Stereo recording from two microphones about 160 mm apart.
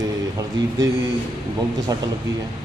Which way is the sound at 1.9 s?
25° right (ahead or behind).